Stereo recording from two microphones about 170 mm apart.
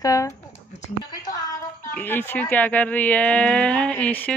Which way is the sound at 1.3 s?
20° left (ahead or behind).